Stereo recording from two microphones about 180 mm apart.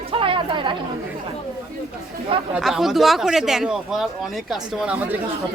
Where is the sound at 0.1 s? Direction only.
30° right (ahead or behind).